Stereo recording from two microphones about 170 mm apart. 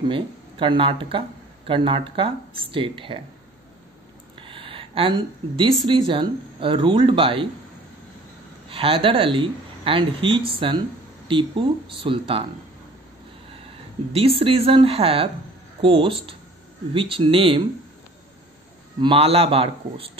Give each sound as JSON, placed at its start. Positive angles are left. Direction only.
{"t": 0.1, "sound": "speech", "side_deg": -30}
{"t": 4.4, "sound": "a sound", "side_deg": -30}
{"t": 5.9, "sound": "speech", "side_deg": -30}
{"t": 8.6, "sound": "speech", "side_deg": -30}
{"t": 14.1, "sound": "speech", "side_deg": -35}
{"t": 18.9, "sound": "speech", "side_deg": -30}